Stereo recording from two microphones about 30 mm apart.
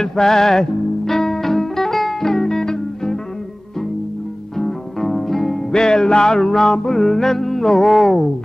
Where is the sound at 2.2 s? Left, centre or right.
Centre.